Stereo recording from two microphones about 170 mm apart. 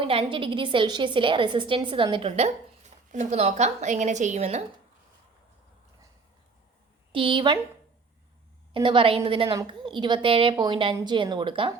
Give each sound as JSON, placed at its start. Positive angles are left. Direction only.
{"t": 0.1, "sound": "a woman's voice", "side_deg": -30}
{"t": 7.1, "sound": "a woman's voice", "side_deg": -30}
{"t": 8.7, "sound": "a woman's voice", "side_deg": -30}